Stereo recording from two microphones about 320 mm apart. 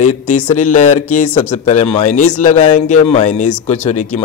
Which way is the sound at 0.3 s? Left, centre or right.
Left.